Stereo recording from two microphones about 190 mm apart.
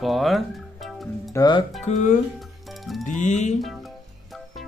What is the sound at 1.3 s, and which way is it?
Speech, 20° left (ahead or behind).